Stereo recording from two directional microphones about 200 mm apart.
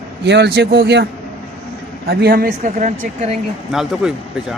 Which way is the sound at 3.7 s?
Centre (ahead or behind).